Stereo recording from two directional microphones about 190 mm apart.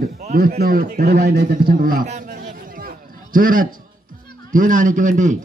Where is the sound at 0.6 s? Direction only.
50° right (ahead or behind).